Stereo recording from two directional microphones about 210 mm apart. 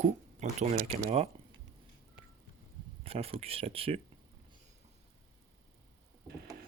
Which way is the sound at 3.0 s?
30° right (ahead or behind).